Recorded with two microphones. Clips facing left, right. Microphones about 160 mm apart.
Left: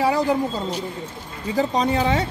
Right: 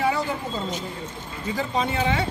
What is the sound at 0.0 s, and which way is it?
A woman's voice, 35° left (ahead or behind).